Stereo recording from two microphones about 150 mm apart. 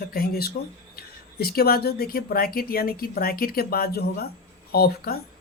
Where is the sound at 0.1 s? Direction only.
90° left.